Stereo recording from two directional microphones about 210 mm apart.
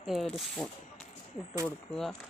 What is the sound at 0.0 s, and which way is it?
Speech, centre (ahead or behind).